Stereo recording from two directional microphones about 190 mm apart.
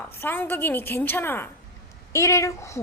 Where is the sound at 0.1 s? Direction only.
10° left (ahead or behind).